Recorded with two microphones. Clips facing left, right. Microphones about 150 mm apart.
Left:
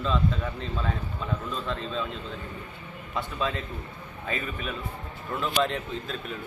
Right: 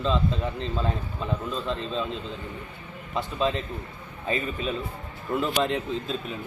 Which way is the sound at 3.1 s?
25° right (ahead or behind).